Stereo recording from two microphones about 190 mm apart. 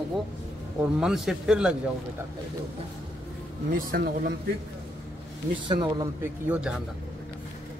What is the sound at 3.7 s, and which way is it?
Speech, 50° right (ahead or behind).